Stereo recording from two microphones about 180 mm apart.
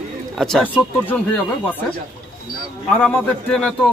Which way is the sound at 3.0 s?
5° left (ahead or behind).